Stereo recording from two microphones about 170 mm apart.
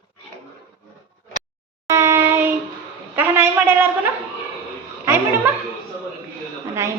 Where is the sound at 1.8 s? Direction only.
15° right (ahead or behind).